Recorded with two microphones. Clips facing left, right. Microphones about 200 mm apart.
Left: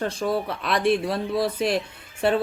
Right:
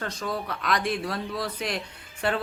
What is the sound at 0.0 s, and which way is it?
Speech, 25° left (ahead or behind).